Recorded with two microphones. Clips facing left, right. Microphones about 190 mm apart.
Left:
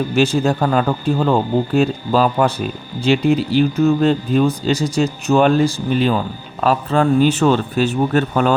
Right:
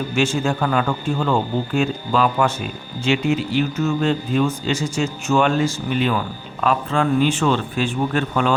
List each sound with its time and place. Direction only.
0.1 s speech: 35° left (ahead or behind)